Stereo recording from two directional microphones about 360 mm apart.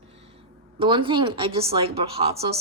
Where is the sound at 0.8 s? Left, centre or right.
Centre.